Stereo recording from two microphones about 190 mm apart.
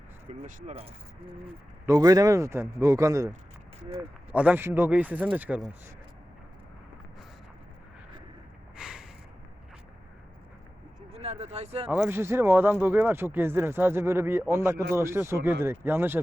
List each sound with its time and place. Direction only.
0.3 s speech: 35° right (ahead or behind)
1.9 s speech: 20° right (ahead or behind)
3.8 s speech: 35° right (ahead or behind)
4.3 s speech: 10° right (ahead or behind)
8.7 s a sound: 5° right (ahead or behind)
11.1 s a sound: 35° right (ahead or behind)
11.9 s speech: 10° right (ahead or behind)